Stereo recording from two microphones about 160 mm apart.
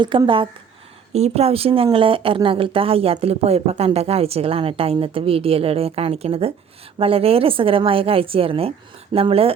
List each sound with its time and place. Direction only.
0.0 s speech: 30° right (ahead or behind)